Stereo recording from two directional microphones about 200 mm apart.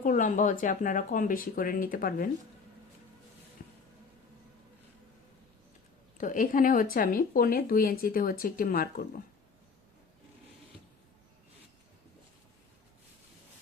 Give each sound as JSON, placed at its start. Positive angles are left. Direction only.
{"t": 0.0, "sound": "speech", "side_deg": 40}
{"t": 3.6, "sound": "a sound", "side_deg": 45}
{"t": 6.1, "sound": "a woman's voice", "side_deg": 40}